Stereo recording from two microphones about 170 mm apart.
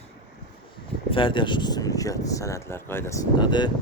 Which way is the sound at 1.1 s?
30° left (ahead or behind).